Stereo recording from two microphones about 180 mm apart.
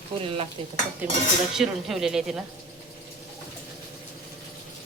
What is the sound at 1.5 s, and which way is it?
Speech, centre (ahead or behind).